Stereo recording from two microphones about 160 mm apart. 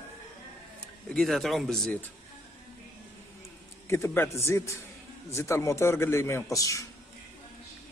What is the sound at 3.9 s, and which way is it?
A man's voice, 15° left (ahead or behind).